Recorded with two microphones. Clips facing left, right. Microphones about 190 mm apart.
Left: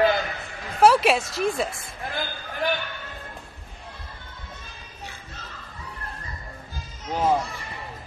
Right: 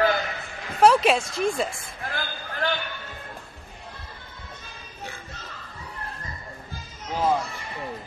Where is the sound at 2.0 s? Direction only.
20° left (ahead or behind).